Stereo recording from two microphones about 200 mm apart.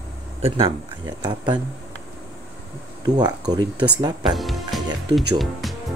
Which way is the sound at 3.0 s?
20° right (ahead or behind).